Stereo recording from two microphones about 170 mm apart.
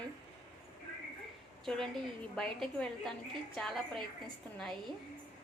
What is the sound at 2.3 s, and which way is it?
A woman's voice, 5° left (ahead or behind).